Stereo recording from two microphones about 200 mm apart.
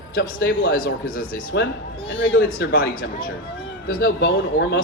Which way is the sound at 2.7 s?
45° left (ahead or behind).